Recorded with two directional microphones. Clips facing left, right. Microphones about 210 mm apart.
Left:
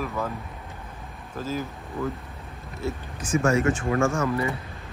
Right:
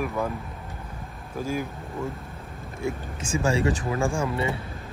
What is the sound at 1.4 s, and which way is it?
Speech, 10° right (ahead or behind).